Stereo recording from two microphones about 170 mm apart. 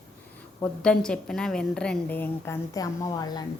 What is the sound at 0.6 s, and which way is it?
Speech, 5° left (ahead or behind).